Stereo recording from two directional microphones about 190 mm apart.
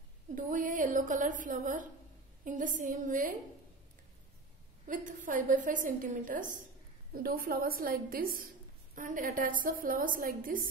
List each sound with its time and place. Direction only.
0.3 s a woman's voice: 45° right (ahead or behind)
4.8 s a woman's voice: 45° right (ahead or behind)